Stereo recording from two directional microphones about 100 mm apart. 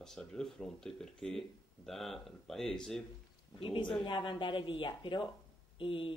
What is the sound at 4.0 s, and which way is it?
Speech, 55° left (ahead or behind).